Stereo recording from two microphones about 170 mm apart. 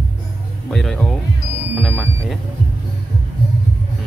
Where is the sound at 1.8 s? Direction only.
5° left (ahead or behind).